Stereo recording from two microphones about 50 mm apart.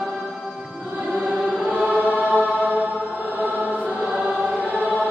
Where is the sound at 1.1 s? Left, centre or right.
Right.